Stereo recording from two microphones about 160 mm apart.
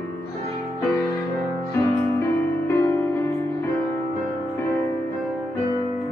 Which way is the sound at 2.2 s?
15° left (ahead or behind).